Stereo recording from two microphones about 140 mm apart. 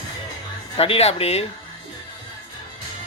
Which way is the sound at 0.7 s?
45° left (ahead or behind).